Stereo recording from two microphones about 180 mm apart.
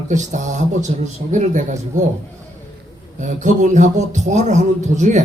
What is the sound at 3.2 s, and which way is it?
A man's voice, 45° right (ahead or behind).